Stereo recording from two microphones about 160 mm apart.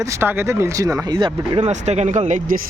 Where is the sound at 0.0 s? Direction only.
15° right (ahead or behind).